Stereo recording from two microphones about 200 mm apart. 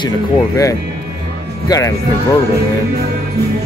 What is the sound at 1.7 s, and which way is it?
Speech, 15° left (ahead or behind).